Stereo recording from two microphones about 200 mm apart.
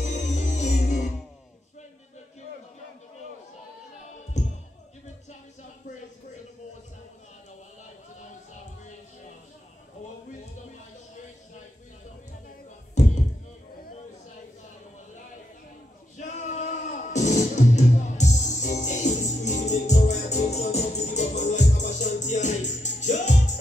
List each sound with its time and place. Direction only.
0.0 s music: 35° left (ahead or behind)
4.4 s music: 35° left (ahead or behind)
16.2 s music: 35° left (ahead or behind)